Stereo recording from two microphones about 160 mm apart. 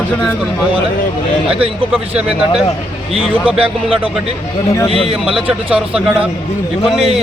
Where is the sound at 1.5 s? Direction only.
35° right (ahead or behind).